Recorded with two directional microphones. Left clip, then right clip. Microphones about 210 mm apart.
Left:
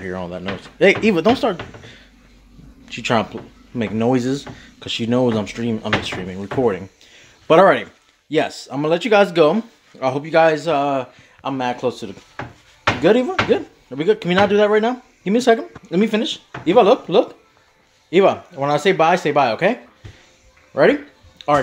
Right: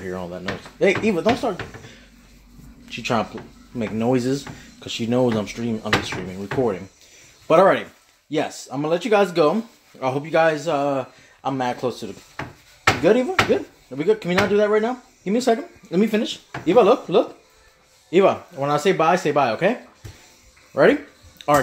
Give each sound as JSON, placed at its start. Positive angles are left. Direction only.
{"t": 0.0, "sound": "speech", "side_deg": 15}
{"t": 2.9, "sound": "speech", "side_deg": 20}
{"t": 20.7, "sound": "a sound", "side_deg": 5}